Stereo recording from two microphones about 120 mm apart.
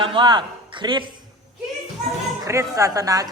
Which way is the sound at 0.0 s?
45° right (ahead or behind).